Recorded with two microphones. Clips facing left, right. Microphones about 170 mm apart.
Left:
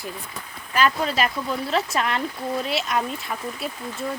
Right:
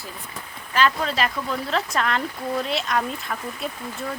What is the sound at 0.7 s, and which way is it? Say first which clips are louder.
Speech: even; 10° left (ahead or behind).